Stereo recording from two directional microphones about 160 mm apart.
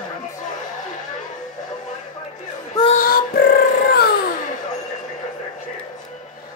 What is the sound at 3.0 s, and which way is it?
Beatboxing, 70° left (ahead or behind).